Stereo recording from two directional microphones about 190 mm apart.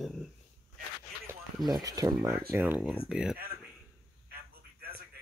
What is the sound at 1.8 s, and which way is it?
Speech, 20° right (ahead or behind).